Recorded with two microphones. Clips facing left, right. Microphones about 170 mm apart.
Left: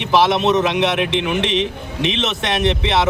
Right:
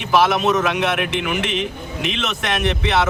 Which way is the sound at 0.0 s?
25° left (ahead or behind).